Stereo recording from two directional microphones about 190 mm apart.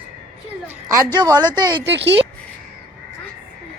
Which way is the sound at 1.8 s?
65° right (ahead or behind).